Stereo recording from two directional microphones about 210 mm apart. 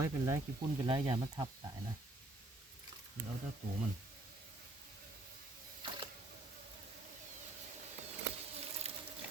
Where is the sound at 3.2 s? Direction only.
40° right (ahead or behind).